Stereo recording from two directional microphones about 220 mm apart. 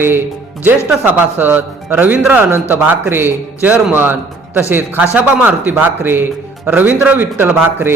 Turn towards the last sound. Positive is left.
turn(degrees=-10)  # may be behind; listen again after turning